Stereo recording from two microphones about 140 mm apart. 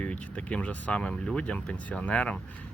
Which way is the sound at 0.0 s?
10° left (ahead or behind).